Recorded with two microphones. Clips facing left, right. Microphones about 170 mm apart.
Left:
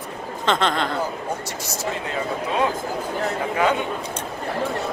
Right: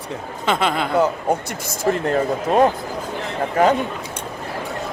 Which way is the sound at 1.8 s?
50° right (ahead or behind).